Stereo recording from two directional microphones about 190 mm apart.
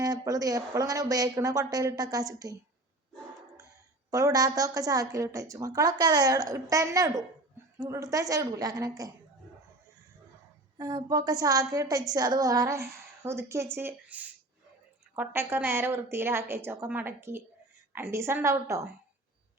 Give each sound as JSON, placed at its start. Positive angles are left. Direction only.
{"t": 0.0, "sound": "a woman's voice", "side_deg": -20}
{"t": 4.1, "sound": "a woman's voice", "side_deg": -20}
{"t": 10.8, "sound": "a woman's voice", "side_deg": -20}